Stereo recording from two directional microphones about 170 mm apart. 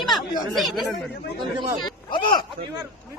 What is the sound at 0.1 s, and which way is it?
Speech, centre (ahead or behind).